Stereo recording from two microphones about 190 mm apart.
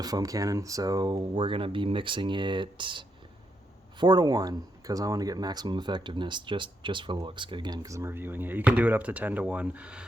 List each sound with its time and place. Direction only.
0.0 s speech: 20° right (ahead or behind)